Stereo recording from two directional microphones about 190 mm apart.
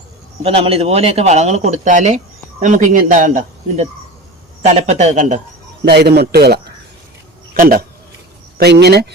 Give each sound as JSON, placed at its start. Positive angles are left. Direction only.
{"t": 0.4, "sound": "a man's voice", "side_deg": -30}
{"t": 5.8, "sound": "a man's voice", "side_deg": -60}
{"t": 8.5, "sound": "a man's voice", "side_deg": -60}